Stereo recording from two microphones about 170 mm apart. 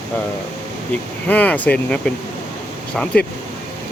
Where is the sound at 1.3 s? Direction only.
10° left (ahead or behind).